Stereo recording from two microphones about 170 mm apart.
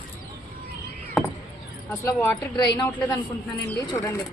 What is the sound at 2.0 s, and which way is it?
Speech, 10° left (ahead or behind).